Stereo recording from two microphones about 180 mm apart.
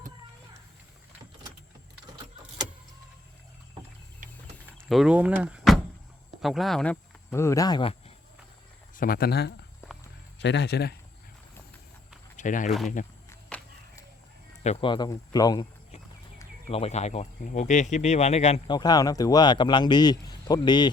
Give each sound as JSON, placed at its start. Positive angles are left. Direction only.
{"t": 4.9, "sound": "speech", "side_deg": -5}
{"t": 9.0, "sound": "speech", "side_deg": 55}
{"t": 10.3, "sound": "speech", "side_deg": 75}
{"t": 12.4, "sound": "speech", "side_deg": 45}
{"t": 13.5, "sound": "a sound", "side_deg": 5}
{"t": 14.6, "sound": "speech", "side_deg": 35}
{"t": 16.6, "sound": "speech", "side_deg": 35}
{"t": 18.7, "sound": "speech", "side_deg": 20}